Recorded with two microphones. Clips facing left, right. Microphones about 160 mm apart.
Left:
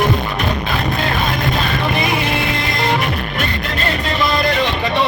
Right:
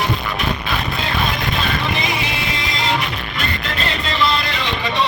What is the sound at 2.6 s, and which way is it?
Music, 55° left (ahead or behind).